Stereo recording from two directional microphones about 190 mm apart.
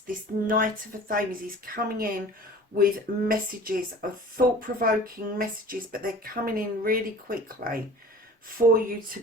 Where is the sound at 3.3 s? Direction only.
50° right (ahead or behind).